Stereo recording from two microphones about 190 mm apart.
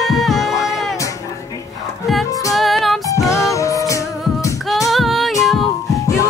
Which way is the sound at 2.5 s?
Centre (ahead or behind).